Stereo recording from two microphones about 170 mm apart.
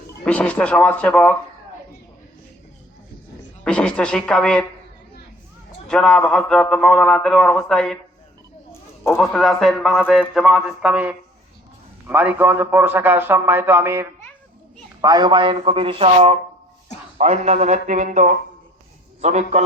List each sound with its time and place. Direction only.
0.3 s speech: 10° left (ahead or behind)
3.6 s a man's voice: 5° left (ahead or behind)
5.9 s a man's voice: 5° left (ahead or behind)
9.1 s a man's voice: centre (ahead or behind); by 19.6 s 40° right (ahead or behind)